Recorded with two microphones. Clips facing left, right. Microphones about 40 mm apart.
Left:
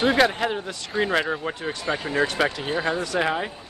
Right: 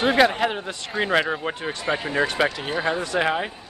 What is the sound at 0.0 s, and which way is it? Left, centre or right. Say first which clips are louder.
Speech: right 1 dB; centre.